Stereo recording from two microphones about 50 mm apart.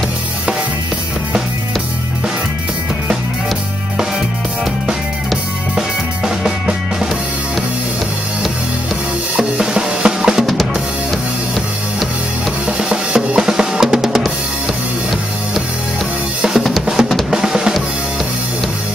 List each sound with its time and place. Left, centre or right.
5.8 s music: centre
9.4 s drum kit: centre
10.4 s drum kit: centre
12.6 s drum: centre
16.3 s drum kit: centre
16.8 s music: centre